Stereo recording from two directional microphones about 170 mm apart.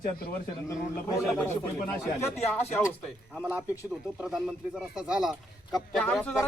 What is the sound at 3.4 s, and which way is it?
A man's voice, 10° right (ahead or behind).